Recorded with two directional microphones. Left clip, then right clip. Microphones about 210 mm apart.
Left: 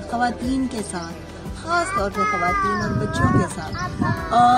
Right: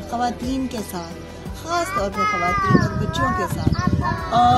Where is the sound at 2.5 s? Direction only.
55° left (ahead or behind).